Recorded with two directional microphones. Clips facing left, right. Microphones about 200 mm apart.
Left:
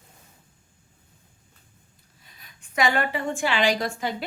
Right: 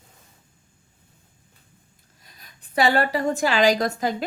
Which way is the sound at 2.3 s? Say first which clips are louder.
Right 3 dB; 35° right (ahead or behind).